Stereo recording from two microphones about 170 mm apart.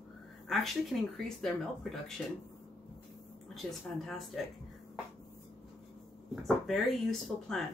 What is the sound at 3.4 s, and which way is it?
Speech, centre (ahead or behind).